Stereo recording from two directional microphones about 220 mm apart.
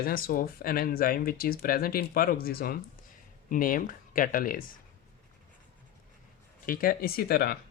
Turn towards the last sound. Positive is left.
turn(degrees=45)  # may be behind; listen again after turning